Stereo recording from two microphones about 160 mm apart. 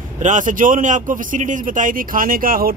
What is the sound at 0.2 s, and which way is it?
Speech, 50° right (ahead or behind).